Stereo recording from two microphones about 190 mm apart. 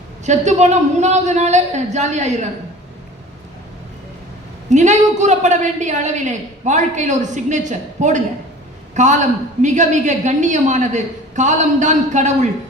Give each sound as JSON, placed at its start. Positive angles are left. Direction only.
{"t": 0.3, "sound": "a woman's voice", "side_deg": -35}
{"t": 4.7, "sound": "a woman's voice", "side_deg": -40}